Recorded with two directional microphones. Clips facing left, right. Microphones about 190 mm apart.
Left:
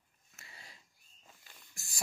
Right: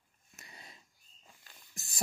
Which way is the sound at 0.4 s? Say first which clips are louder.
Right 2 dB; 20° right (ahead or behind).